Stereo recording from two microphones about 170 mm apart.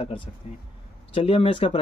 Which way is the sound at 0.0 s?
30° left (ahead or behind).